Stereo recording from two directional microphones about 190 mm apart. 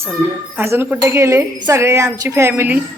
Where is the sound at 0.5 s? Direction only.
15° right (ahead or behind).